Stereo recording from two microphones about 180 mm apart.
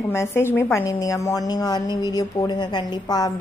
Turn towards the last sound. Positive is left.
turn(degrees=20)  # may be behind; listen again after turning